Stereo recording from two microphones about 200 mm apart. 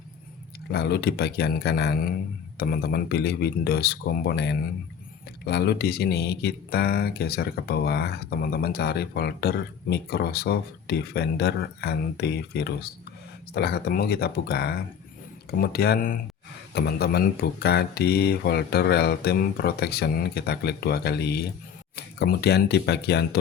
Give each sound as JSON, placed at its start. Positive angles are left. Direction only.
{"t": 0.7, "sound": "speech", "side_deg": 55}